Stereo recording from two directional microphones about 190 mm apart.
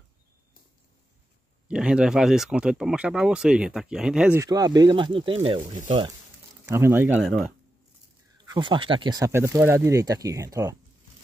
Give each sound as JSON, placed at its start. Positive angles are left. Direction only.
{"t": 1.7, "sound": "speech", "side_deg": -5}
{"t": 4.5, "sound": "speech", "side_deg": -20}
{"t": 6.6, "sound": "speech", "side_deg": -10}
{"t": 8.5, "sound": "speech", "side_deg": -25}